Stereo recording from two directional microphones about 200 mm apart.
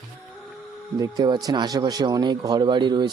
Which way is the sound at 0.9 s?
20° right (ahead or behind).